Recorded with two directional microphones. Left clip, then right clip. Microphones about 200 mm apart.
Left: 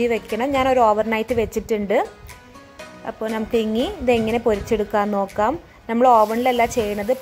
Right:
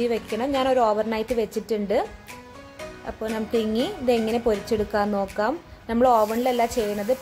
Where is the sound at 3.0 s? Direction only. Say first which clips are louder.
Left 4 dB; 15° left (ahead or behind).